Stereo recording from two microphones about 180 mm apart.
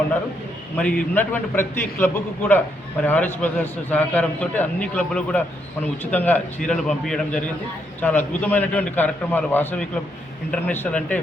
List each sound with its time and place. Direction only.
0.8 s a man's voice: 5° left (ahead or behind)